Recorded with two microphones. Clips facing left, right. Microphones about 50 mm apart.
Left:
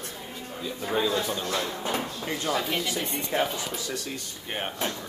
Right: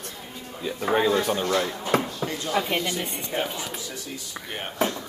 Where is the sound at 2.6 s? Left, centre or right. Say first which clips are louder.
Right 3 dB; right.